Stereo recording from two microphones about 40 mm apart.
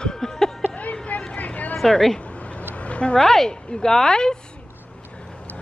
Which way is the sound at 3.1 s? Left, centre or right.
Centre.